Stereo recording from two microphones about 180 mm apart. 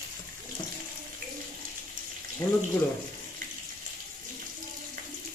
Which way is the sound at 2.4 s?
20° left (ahead or behind).